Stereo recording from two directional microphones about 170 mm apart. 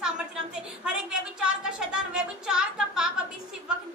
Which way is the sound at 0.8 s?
5° right (ahead or behind).